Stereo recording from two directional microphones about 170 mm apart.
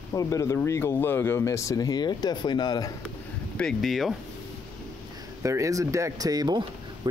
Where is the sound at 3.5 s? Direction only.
Centre (ahead or behind).